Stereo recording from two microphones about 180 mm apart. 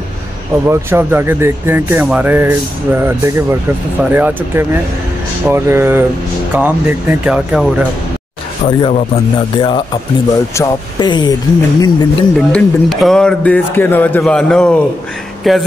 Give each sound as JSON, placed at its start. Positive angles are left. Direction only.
{"t": 0.7, "sound": "speech", "side_deg": -15}
{"t": 8.6, "sound": "speech", "side_deg": 30}
{"t": 12.4, "sound": "speech", "side_deg": 0}